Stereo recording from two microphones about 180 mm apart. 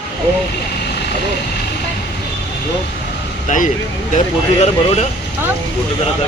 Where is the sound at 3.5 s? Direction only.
45° left (ahead or behind).